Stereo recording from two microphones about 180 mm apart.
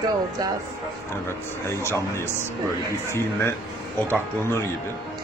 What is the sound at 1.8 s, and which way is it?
Speech, 15° left (ahead or behind).